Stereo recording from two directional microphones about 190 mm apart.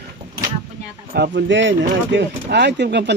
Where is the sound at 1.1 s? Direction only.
60° right (ahead or behind).